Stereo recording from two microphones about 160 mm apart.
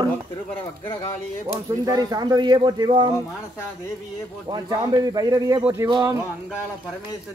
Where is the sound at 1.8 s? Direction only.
25° right (ahead or behind).